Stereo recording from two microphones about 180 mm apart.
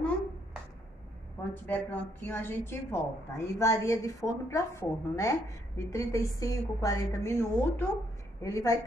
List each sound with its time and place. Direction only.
1.4 s a woman's voice: 10° left (ahead or behind)